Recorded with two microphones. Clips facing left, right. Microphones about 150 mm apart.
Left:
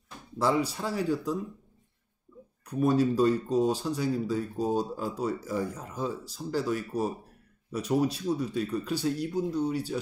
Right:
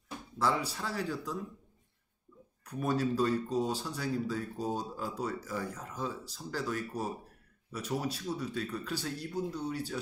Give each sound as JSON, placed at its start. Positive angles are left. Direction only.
{"t": 0.4, "sound": "speech", "side_deg": 15}
{"t": 2.8, "sound": "speech", "side_deg": 20}